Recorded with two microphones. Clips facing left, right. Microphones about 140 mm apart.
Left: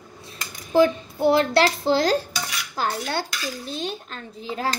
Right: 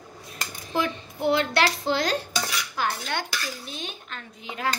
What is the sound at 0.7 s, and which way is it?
Dishes, 30° left (ahead or behind).